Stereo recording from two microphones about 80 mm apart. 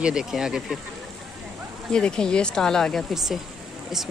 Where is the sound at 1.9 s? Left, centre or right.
Centre.